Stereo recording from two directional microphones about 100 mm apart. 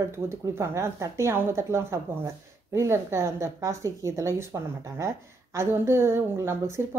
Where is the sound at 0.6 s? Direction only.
30° right (ahead or behind).